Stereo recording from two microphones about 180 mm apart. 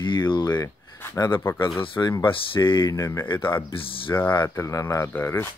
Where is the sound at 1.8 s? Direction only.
25° left (ahead or behind).